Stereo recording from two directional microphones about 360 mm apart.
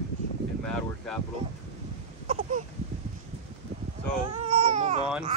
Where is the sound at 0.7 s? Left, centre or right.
Centre.